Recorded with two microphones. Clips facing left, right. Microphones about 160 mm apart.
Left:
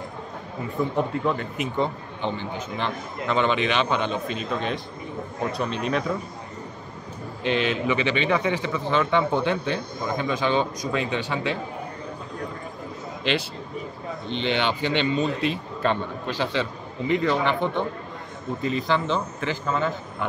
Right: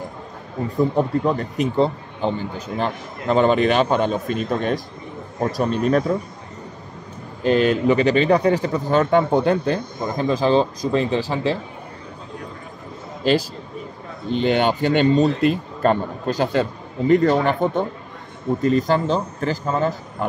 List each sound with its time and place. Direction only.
0.7 s a man's voice: 35° right (ahead or behind)
7.4 s a man's voice: 40° right (ahead or behind)
13.2 s a man's voice: 40° right (ahead or behind)